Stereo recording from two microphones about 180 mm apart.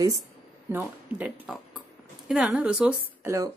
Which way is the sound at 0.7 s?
10° right (ahead or behind).